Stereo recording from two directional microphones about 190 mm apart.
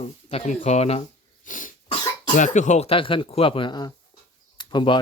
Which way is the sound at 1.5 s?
45° left (ahead or behind).